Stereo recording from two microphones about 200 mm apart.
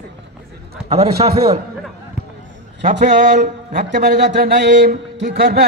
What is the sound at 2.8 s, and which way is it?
A man's voice, 40° right (ahead or behind).